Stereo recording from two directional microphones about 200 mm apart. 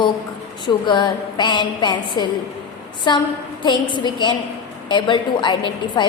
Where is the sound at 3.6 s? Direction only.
25° left (ahead or behind).